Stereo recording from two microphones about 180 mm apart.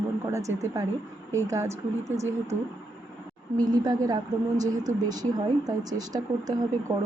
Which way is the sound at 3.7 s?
20° right (ahead or behind).